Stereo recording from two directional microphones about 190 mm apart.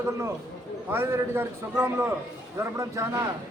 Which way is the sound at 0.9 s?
15° right (ahead or behind).